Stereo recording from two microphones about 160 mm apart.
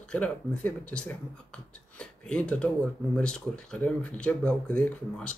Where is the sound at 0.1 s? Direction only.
10° left (ahead or behind).